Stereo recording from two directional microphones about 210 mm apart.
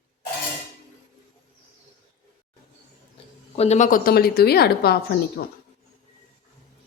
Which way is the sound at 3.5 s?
30° left (ahead or behind).